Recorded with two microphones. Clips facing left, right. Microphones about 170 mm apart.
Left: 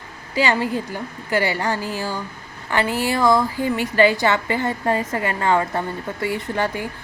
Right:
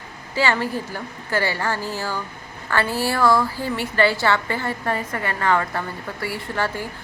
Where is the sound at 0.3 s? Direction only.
15° left (ahead or behind).